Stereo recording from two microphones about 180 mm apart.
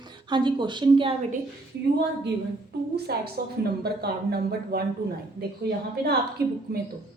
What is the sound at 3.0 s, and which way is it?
A woman's voice, 65° right (ahead or behind).